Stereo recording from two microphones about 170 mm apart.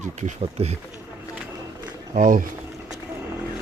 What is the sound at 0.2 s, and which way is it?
Speech, 45° right (ahead or behind).